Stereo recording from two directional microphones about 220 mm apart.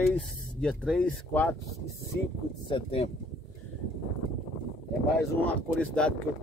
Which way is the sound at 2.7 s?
25° left (ahead or behind).